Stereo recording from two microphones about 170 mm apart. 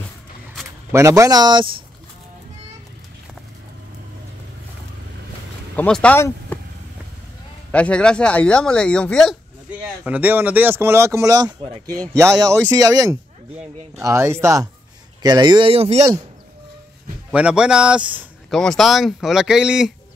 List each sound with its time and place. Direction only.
0.9 s speech: 20° right (ahead or behind)
5.8 s speech: 5° left (ahead or behind)
7.7 s speech: 5° left (ahead or behind)
10.0 s speech: 10° right (ahead or behind); by 16.0 s 35° right (ahead or behind)
17.3 s a man's voice: 5° right (ahead or behind)